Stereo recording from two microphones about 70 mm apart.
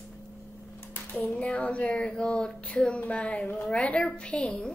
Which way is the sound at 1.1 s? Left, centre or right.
Centre.